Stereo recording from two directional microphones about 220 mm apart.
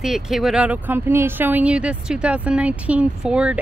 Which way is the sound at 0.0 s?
Centre (ahead or behind).